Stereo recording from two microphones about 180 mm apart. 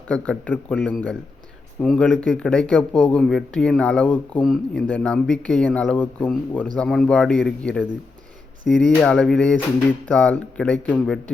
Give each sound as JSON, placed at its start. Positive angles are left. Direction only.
{"t": 0.1, "sound": "a man's voice", "side_deg": 5}